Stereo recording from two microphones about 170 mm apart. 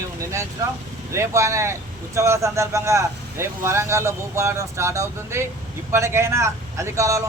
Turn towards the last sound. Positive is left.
turn(degrees=-20)  # may be behind; listen again after turning